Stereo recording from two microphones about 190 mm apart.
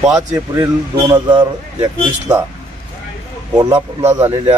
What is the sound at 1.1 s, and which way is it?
Speech, 25° right (ahead or behind).